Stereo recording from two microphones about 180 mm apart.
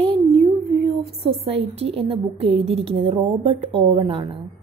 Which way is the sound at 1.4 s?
35° right (ahead or behind).